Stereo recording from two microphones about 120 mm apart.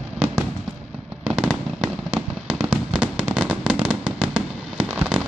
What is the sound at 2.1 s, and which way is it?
Fireworks, 15° right (ahead or behind).